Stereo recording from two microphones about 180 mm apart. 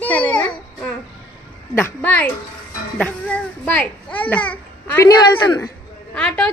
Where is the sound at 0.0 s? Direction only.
10° left (ahead or behind).